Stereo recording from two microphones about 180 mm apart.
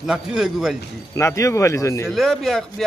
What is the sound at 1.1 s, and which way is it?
Speech, 15° left (ahead or behind).